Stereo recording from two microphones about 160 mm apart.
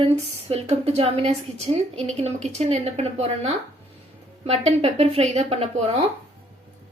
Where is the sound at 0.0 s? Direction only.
40° right (ahead or behind).